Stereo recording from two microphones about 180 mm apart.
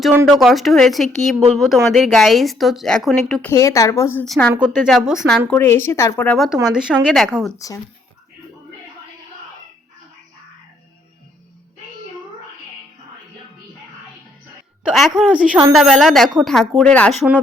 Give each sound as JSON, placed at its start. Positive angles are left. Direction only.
{"t": 0.0, "sound": "speech", "side_deg": -5}
{"t": 3.5, "sound": "speech", "side_deg": 15}
{"t": 4.5, "sound": "speech", "side_deg": -5}
{"t": 5.5, "sound": "speech", "side_deg": 15}
{"t": 14.8, "sound": "speech", "side_deg": 0}